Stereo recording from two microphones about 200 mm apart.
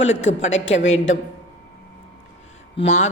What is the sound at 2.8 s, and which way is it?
Speech, 35° left (ahead or behind).